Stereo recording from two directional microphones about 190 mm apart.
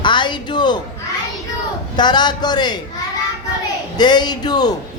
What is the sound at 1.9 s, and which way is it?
Speech, 20° left (ahead or behind).